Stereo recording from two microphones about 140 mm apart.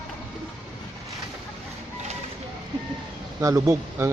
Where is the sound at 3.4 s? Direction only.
25° right (ahead or behind).